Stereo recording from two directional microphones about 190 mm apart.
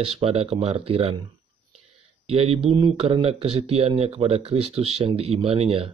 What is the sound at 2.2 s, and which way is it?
Speech, 30° right (ahead or behind).